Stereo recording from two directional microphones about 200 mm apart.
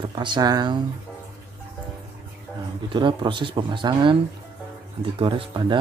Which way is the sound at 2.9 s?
25° right (ahead or behind).